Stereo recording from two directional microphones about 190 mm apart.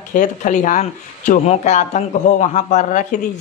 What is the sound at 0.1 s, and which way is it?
A woman's voice, 40° left (ahead or behind).